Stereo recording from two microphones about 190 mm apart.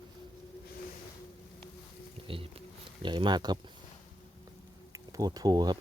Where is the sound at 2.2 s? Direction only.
30° right (ahead or behind).